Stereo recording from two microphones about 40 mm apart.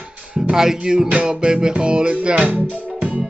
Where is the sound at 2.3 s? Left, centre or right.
Right.